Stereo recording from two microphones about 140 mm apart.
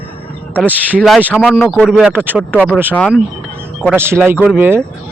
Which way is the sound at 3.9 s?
15° right (ahead or behind).